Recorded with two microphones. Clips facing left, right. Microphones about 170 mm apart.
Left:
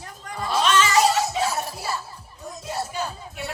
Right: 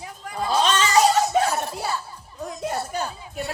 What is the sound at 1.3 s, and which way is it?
Music, 55° right (ahead or behind).